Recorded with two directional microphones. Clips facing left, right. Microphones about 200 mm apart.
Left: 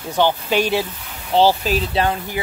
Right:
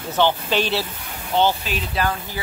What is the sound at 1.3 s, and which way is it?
Speech, 35° left (ahead or behind).